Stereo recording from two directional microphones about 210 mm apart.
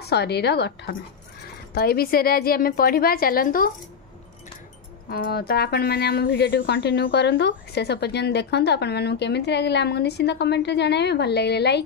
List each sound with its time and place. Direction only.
0.1 s speech: 50° left (ahead or behind)
5.1 s speech: 45° left (ahead or behind)